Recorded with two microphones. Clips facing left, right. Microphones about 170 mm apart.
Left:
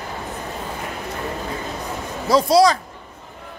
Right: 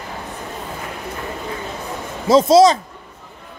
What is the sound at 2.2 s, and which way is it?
Speech, 20° right (ahead or behind).